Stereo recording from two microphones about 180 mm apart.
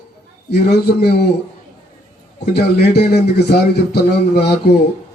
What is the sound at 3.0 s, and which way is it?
A man's voice, 60° left (ahead or behind).